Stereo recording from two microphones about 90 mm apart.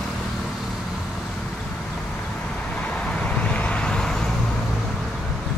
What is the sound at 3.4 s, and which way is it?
Vehicle, 15° left (ahead or behind).